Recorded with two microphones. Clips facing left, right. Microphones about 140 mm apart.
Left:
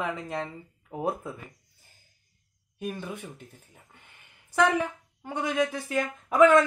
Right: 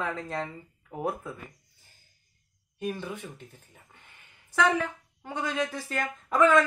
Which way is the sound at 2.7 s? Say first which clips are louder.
Right 2 dB; 10° left (ahead or behind).